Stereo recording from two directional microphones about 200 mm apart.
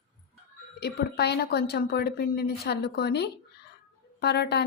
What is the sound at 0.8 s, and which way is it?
A woman's voice, 55° left (ahead or behind).